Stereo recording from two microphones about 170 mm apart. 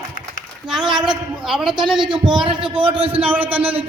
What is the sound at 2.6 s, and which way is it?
Speech, 30° right (ahead or behind).